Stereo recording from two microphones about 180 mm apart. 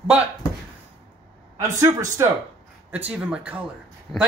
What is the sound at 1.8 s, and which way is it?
Speech, 15° right (ahead or behind).